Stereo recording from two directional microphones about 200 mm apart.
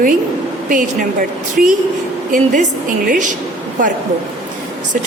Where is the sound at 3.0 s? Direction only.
40° right (ahead or behind).